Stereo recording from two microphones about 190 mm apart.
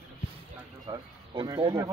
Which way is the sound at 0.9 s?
25° right (ahead or behind).